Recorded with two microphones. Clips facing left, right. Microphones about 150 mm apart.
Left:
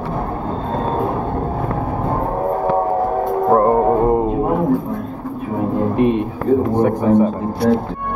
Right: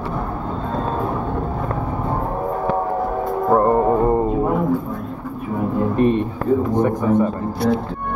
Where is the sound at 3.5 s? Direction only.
15° left (ahead or behind).